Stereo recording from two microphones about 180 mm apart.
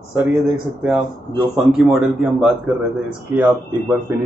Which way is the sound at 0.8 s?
5° right (ahead or behind).